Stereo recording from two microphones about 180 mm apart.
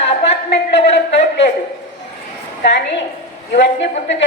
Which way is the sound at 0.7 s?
70° left (ahead or behind).